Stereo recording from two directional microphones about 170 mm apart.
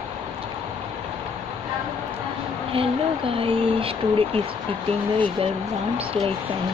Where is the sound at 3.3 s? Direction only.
35° right (ahead or behind).